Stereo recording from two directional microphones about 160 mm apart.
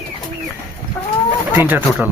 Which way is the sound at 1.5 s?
10° right (ahead or behind).